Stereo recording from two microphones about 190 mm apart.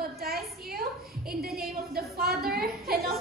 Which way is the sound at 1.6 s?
55° right (ahead or behind).